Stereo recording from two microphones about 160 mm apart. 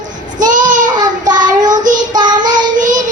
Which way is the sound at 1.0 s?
25° right (ahead or behind).